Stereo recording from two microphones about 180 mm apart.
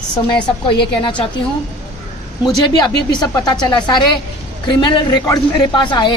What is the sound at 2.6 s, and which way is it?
A woman's voice, 25° left (ahead or behind).